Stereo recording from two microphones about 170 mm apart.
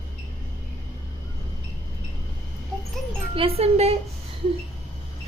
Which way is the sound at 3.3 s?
35° right (ahead or behind).